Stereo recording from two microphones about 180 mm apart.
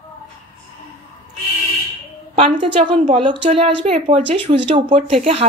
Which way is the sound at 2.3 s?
30° right (ahead or behind).